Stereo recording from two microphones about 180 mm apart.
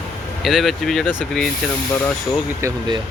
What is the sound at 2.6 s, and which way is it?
Speech, 25° right (ahead or behind).